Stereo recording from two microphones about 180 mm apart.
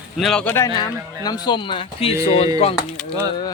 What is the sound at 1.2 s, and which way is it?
Speech, 25° left (ahead or behind).